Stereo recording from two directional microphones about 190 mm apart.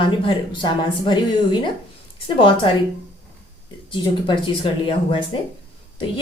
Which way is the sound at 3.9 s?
25° left (ahead or behind).